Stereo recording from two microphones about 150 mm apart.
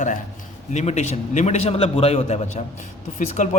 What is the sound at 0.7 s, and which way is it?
A man's voice, 50° left (ahead or behind).